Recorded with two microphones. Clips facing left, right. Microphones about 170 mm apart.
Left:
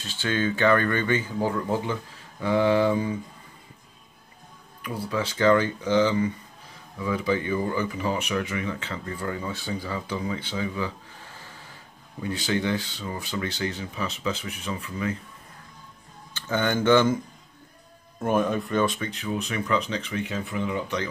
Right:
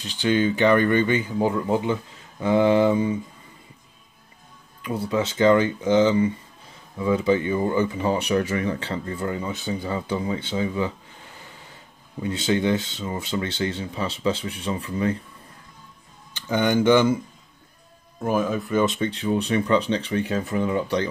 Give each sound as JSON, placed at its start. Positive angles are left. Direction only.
{"t": 0.0, "sound": "speech", "side_deg": -15}
{"t": 4.8, "sound": "speech", "side_deg": -20}
{"t": 12.2, "sound": "speech", "side_deg": -25}
{"t": 16.3, "sound": "speech", "side_deg": -15}
{"t": 18.2, "sound": "speech", "side_deg": 0}
{"t": 18.9, "sound": "speech", "side_deg": -30}